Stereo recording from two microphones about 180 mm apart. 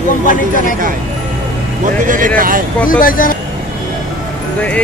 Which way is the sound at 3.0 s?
50° left (ahead or behind).